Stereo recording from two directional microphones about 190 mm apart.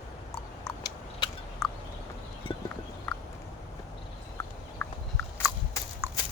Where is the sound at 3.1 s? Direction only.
5° left (ahead or behind).